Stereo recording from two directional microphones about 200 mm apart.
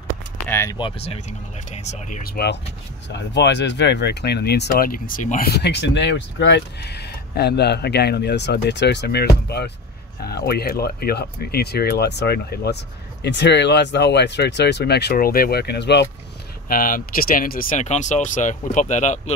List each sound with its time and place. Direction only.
0.5 s a sound: 10° left (ahead or behind)
0.7 s speech: 25° left (ahead or behind); by 16.1 s 60° left (ahead or behind)
16.6 s speech: 45° left (ahead or behind)